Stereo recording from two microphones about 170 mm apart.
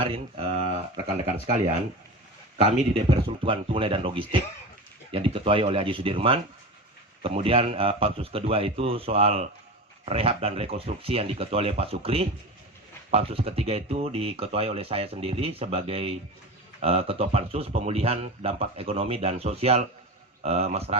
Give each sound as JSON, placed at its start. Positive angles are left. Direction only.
{"t": 0.0, "sound": "speech", "side_deg": -35}
{"t": 2.6, "sound": "speech", "side_deg": -35}